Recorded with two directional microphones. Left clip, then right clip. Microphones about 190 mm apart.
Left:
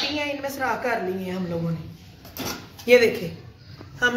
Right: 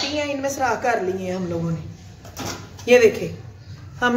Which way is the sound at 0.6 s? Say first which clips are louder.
Right 4 dB; 40° right (ahead or behind).